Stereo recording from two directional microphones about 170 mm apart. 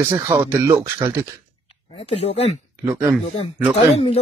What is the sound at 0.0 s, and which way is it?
Speech, 15° right (ahead or behind).